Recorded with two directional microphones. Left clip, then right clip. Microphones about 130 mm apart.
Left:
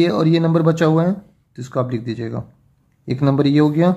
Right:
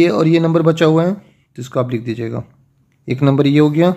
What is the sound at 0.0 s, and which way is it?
Speech, 25° right (ahead or behind).